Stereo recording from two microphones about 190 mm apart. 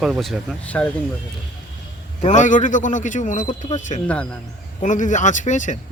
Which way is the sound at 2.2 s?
40° left (ahead or behind).